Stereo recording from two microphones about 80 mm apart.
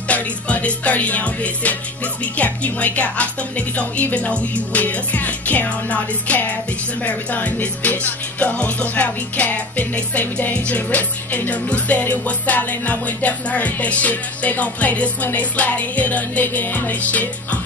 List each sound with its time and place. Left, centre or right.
0.1 s music: centre
2.3 s a woman's voice: centre
7.1 s music: centre